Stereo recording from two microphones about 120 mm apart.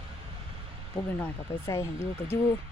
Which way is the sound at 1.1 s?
20° left (ahead or behind).